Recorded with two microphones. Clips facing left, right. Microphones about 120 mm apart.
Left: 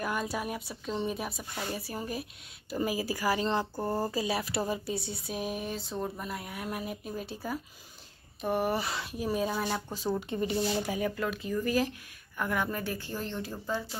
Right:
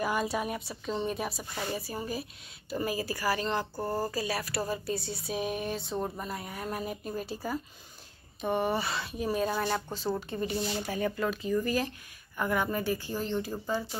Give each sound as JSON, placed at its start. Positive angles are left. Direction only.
{"t": 0.0, "sound": "speech", "side_deg": 0}
{"t": 5.1, "sound": "speech", "side_deg": 0}
{"t": 10.3, "sound": "speech", "side_deg": 20}
{"t": 11.1, "sound": "speech", "side_deg": 0}